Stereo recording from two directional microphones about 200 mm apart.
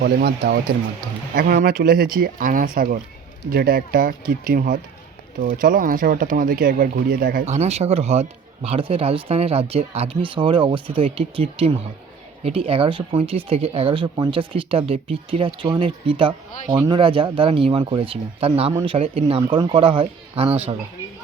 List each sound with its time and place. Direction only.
0.0 s speech: 50° right (ahead or behind); by 16.3 s 25° right (ahead or behind)
16.7 s speech: 15° right (ahead or behind)
17.0 s speech: 25° right (ahead or behind)